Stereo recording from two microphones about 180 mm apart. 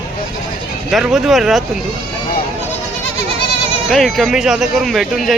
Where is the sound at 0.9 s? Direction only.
Centre (ahead or behind).